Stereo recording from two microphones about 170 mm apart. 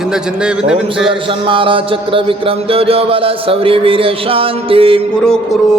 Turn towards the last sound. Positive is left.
turn(degrees=-30)  # may be behind; listen again after turning